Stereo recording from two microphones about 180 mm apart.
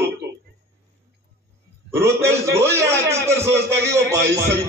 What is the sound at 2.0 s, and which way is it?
A man's voice, 15° right (ahead or behind).